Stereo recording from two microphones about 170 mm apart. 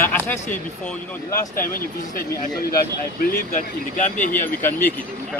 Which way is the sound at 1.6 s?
55° left (ahead or behind).